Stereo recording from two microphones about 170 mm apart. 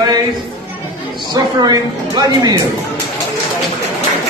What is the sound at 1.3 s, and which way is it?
Speech, 25° right (ahead or behind).